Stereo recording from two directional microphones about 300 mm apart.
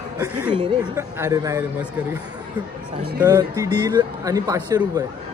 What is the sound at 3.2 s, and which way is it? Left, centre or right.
A man's voice, centre.